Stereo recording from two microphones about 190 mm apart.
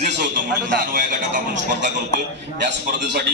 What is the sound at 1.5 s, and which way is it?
A man's voice, 65° right (ahead or behind).